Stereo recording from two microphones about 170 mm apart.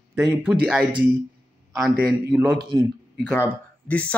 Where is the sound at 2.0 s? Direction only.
5° right (ahead or behind).